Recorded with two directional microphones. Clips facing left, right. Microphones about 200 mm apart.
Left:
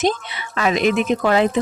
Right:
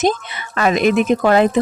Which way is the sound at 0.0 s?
50° right (ahead or behind).